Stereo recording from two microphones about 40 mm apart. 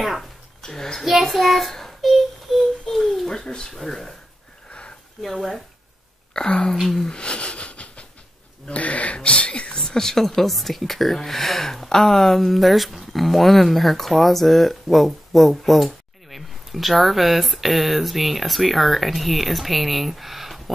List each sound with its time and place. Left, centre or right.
0.6 s a child's voice: centre
1.0 s child singing: centre
3.3 s speech: centre
4.6 s a sound: left
5.2 s speech: centre
6.3 s speech: left
6.8 s speech: centre
7.1 s wheeze: left
8.6 s sneeze: left
9.8 s speech: centre